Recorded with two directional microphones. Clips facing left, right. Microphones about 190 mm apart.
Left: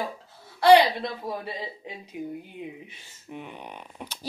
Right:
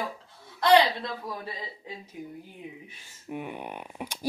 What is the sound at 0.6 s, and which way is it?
Speech, 10° left (ahead or behind).